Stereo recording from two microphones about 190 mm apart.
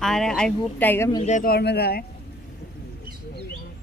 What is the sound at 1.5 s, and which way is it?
Speech, 60° left (ahead or behind).